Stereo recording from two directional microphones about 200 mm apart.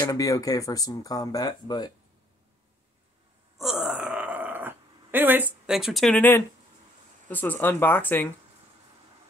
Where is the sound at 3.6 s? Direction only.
Centre (ahead or behind).